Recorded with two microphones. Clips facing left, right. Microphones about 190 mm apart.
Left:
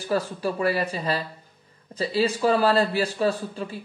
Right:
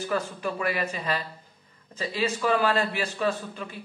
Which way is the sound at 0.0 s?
35° left (ahead or behind).